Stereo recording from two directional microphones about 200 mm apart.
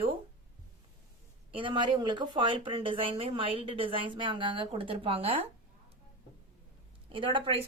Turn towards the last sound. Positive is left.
turn(degrees=-25)  # may be behind; listen again after turning